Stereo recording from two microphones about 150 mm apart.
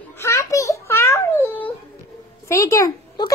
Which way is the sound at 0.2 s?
20° left (ahead or behind).